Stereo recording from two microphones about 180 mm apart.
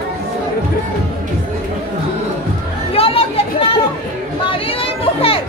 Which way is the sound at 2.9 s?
30° left (ahead or behind).